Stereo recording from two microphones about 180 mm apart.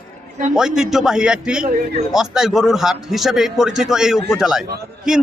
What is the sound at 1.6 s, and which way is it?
Speech, 50° right (ahead or behind).